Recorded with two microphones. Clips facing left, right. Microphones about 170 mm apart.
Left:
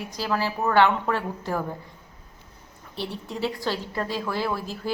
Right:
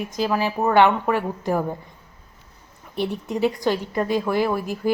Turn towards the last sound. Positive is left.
turn(degrees=-15)  # may be behind; listen again after turning